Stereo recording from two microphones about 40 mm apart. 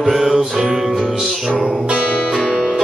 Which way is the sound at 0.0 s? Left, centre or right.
Centre.